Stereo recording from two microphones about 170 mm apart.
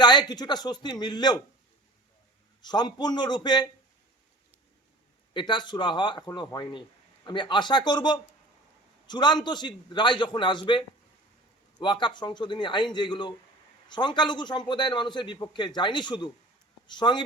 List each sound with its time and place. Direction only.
0.0 s a man's voice: 25° left (ahead or behind)
2.6 s a man's voice: 25° left (ahead or behind)
5.3 s a man's voice: 25° left (ahead or behind)